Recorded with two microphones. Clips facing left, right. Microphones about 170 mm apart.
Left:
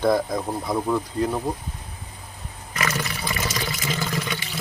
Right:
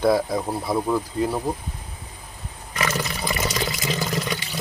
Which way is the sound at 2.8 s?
15° right (ahead or behind).